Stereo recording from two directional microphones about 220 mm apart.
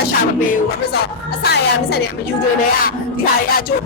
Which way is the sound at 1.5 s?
45° left (ahead or behind).